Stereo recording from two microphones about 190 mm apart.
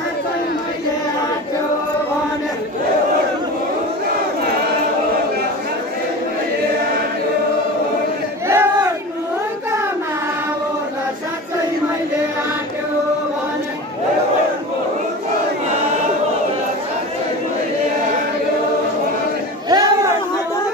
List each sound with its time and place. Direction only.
8.5 s crowd: 15° right (ahead or behind)
19.7 s chatter: 20° right (ahead or behind)